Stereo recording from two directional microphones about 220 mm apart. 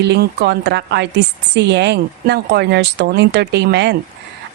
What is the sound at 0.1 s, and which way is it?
A woman's voice, 50° right (ahead or behind).